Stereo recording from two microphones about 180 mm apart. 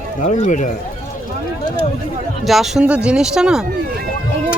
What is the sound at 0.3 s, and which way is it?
Speech, 40° left (ahead or behind).